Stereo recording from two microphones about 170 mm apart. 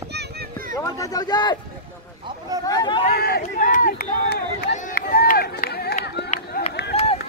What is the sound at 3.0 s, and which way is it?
Run, 65° left (ahead or behind).